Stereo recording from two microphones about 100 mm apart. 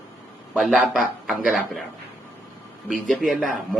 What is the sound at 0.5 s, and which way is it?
A man's voice, centre (ahead or behind).